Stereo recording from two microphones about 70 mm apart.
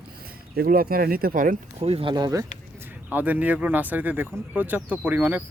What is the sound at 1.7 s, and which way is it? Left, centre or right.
Speech, right.